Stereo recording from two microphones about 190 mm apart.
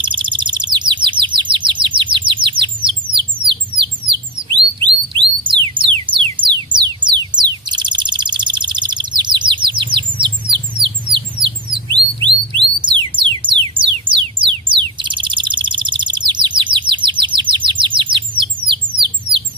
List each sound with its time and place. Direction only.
0.0 s chirp: 25° right (ahead or behind)
3.4 s a sound: 25° right (ahead or behind)
5.4 s music: 25° right (ahead or behind)
6.7 s bird: 25° right (ahead or behind)
10.7 s a sound: 25° right (ahead or behind)
11.4 s bird: 25° right (ahead or behind)
12.5 s music: 25° right (ahead or behind)
15.0 s bird: 25° right (ahead or behind)